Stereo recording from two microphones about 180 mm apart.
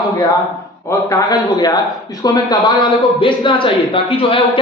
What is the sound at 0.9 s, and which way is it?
A man's voice, 20° left (ahead or behind).